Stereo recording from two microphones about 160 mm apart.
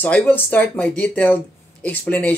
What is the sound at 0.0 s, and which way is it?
Speech, 10° left (ahead or behind).